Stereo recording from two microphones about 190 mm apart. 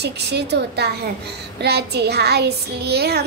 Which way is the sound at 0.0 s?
60° right (ahead or behind).